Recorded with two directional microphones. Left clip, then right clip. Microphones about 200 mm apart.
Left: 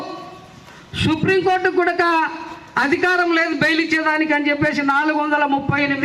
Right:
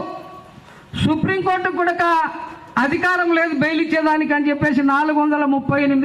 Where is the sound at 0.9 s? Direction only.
50° right (ahead or behind).